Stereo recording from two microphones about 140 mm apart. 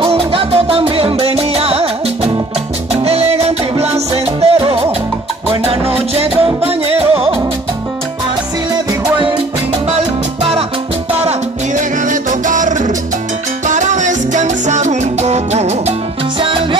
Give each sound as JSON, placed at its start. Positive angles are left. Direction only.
{"t": 0.0, "sound": "music", "side_deg": -40}
{"t": 9.8, "sound": "music", "side_deg": -50}
{"t": 12.1, "sound": "music", "side_deg": -65}
{"t": 16.3, "sound": "music", "side_deg": -40}